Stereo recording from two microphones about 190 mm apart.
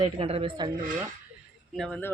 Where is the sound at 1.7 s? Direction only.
5° left (ahead or behind).